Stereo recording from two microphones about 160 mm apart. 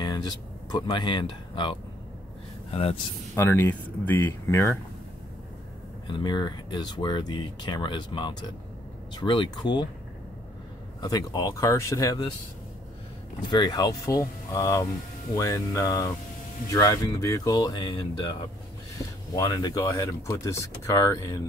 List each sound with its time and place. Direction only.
0.0 s speech: 25° left (ahead or behind)
3.3 s speech: 15° left (ahead or behind)
6.0 s speech: 30° left (ahead or behind)
11.0 s speech: 25° left (ahead or behind)
13.5 s speech: 25° left (ahead or behind)